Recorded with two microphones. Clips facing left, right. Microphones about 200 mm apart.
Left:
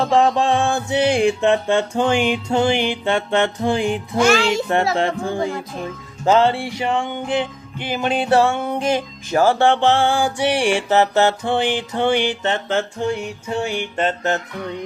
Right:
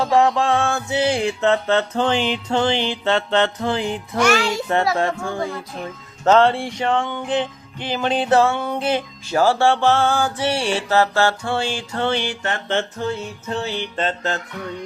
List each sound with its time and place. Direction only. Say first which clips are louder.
0.0 s music: left 1 dB; 20° left (ahead or behind)
4.2 s a child's voice: left 2 dB; 25° left (ahead or behind)
5.3 s music: left 3 dB; 15° left (ahead or behind)
6.2 s music: right 1 dB; 5° left (ahead or behind)